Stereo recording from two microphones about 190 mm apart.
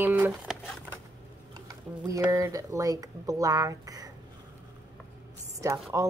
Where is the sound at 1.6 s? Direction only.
20° right (ahead or behind).